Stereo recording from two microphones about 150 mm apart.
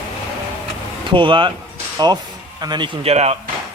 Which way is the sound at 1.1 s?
35° right (ahead or behind).